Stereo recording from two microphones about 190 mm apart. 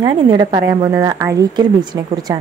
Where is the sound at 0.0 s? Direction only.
20° right (ahead or behind).